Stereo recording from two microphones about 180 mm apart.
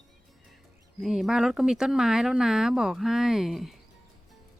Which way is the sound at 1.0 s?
Centre (ahead or behind).